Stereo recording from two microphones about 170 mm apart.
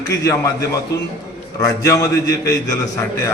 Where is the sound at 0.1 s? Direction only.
20° left (ahead or behind).